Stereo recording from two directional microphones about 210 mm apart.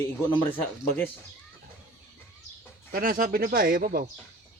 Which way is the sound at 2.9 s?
45° right (ahead or behind).